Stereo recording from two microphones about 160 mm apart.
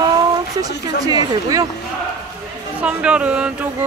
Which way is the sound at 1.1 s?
25° right (ahead or behind).